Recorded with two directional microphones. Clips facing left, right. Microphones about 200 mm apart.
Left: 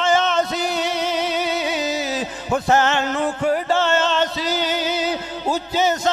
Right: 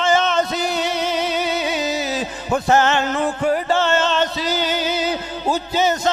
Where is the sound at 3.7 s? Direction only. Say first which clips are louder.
Right 1 dB; 15° right (ahead or behind).